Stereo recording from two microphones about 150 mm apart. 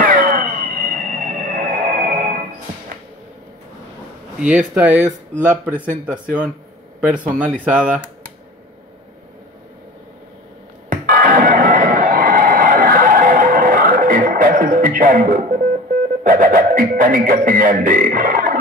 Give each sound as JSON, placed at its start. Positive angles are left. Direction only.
{"t": 0.0, "sound": "music", "side_deg": -65}
{"t": 4.4, "sound": "speech", "side_deg": -10}
{"t": 7.0, "sound": "speech", "side_deg": -10}
{"t": 10.9, "sound": "music", "side_deg": -65}
{"t": 17.5, "sound": "speech", "side_deg": -65}